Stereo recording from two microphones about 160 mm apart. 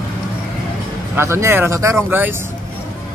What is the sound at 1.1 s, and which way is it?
Speech, 15° right (ahead or behind).